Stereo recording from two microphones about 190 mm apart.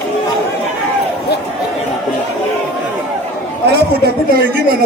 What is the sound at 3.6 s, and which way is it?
A man's voice, 55° right (ahead or behind).